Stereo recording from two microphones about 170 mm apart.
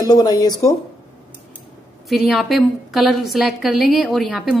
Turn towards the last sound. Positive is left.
turn(degrees=0)  # may be behind; listen again after turning